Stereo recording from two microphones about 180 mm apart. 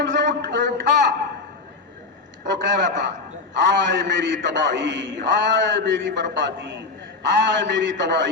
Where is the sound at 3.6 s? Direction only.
75° right (ahead or behind).